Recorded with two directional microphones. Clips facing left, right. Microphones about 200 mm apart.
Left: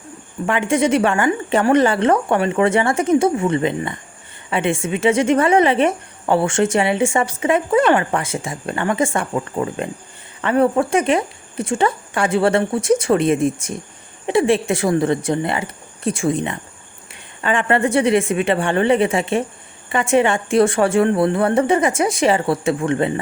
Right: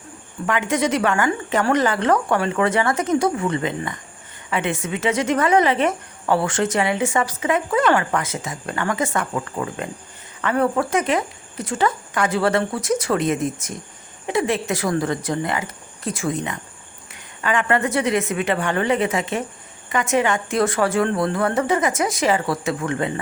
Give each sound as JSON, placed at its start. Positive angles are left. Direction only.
{"t": 0.4, "sound": "speech", "side_deg": 25}